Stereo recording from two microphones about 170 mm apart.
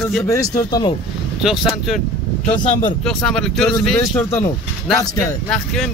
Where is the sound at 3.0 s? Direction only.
5° left (ahead or behind).